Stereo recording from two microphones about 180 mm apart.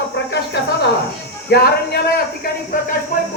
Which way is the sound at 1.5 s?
65° left (ahead or behind).